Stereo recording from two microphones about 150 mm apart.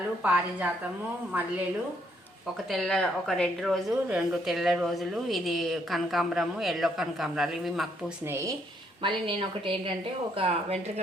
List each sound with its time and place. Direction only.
0.2 s a woman's voice: 10° right (ahead or behind)
2.6 s speech: centre (ahead or behind)
8.3 s speech: 20° right (ahead or behind)
9.0 s speech: 35° right (ahead or behind)